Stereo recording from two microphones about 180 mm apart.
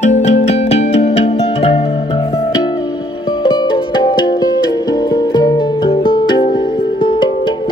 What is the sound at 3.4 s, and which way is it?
Music, 25° left (ahead or behind).